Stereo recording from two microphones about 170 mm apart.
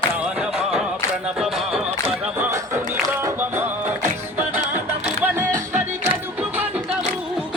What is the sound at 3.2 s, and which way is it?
Music, 15° right (ahead or behind).